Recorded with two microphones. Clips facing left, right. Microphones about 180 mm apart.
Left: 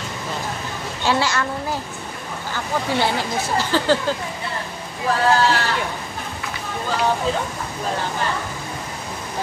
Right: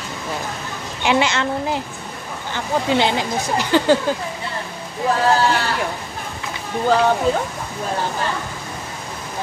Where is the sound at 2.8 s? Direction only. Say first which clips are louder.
Right 3 dB; 20° right (ahead or behind).